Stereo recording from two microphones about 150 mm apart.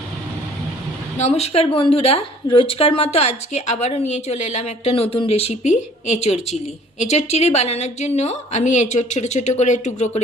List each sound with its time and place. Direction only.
1.2 s speech: 45° left (ahead or behind)